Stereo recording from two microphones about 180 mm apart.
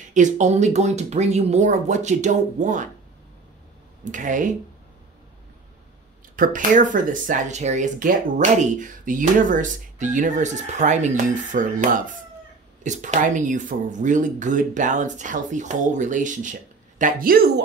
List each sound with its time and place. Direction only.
0.1 s speech: 40° right (ahead or behind)
4.0 s speech: 45° right (ahead or behind)
6.3 s speech: 50° right (ahead or behind)